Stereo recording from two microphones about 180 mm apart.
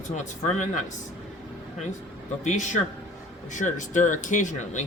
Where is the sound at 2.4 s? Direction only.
40° left (ahead or behind).